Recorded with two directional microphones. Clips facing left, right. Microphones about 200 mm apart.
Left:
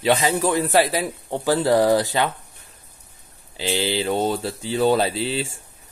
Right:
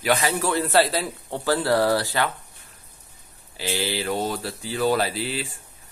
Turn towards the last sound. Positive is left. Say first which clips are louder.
# left 4 dB
turn(degrees=25)  # may be behind; listen again after turning